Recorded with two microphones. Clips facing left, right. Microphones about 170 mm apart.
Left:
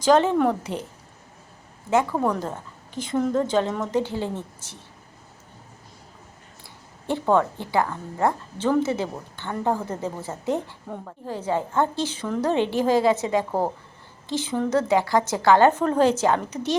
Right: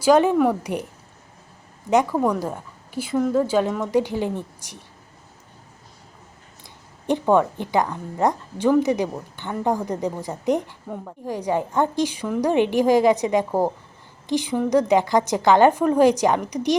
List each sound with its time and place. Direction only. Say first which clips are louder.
0.0 s a woman's voice: right 2 dB; 10° right (ahead or behind)
1.9 s a woman's voice: right 3 dB; 15° right (ahead or behind)
7.1 s a woman's voice: right 3 dB; 15° right (ahead or behind)